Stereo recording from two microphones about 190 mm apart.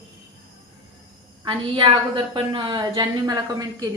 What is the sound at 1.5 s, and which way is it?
A woman's voice, 25° right (ahead or behind).